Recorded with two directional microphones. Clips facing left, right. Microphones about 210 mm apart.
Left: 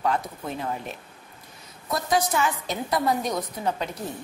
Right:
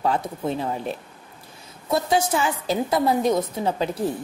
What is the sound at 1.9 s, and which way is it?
A woman's voice, 25° right (ahead or behind).